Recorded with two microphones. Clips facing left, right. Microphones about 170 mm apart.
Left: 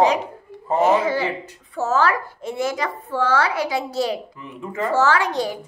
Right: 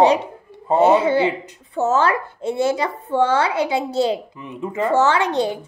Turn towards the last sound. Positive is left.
turn(degrees=-25)  # may be behind; listen again after turning